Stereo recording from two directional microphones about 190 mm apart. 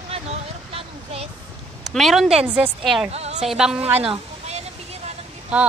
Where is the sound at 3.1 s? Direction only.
35° right (ahead or behind).